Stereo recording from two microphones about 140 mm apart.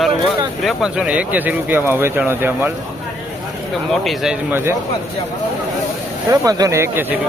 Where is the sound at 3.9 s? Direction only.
Centre (ahead or behind).